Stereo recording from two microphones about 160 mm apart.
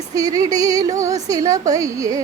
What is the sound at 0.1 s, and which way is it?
Speech, 20° right (ahead or behind).